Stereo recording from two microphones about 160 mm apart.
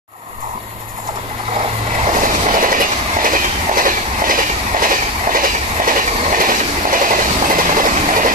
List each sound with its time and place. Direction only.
2.0 s train: 55° right (ahead or behind)